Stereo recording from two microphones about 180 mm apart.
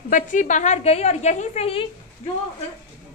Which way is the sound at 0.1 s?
45° left (ahead or behind).